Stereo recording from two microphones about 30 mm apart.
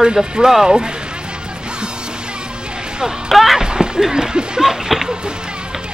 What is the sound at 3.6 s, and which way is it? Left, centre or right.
Speech, right.